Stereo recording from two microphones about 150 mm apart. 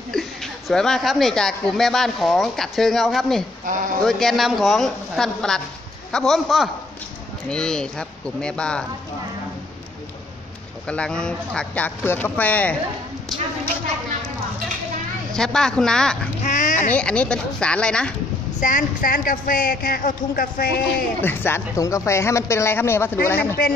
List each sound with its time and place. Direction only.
0.1 s a woman's voice: centre (ahead or behind)
10.9 s speech: 5° left (ahead or behind)
13.3 s a woman's voice: centre (ahead or behind)
15.3 s a woman's voice: 5° left (ahead or behind)
16.4 s speech: 55° left (ahead or behind)
16.9 s speech: 5° left (ahead or behind)
18.6 s a woman's voice: 60° left (ahead or behind); by 20.9 s 85° left
21.2 s speech: 15° left (ahead or behind)